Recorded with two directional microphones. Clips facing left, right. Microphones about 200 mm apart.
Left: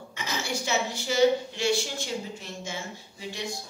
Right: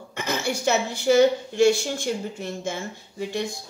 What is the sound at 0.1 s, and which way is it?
A woman's voice, 55° right (ahead or behind).